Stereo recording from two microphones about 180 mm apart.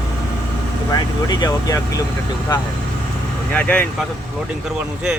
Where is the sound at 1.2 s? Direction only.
20° left (ahead or behind).